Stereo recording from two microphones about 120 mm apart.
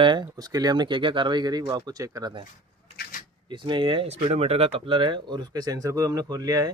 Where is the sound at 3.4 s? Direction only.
40° right (ahead or behind).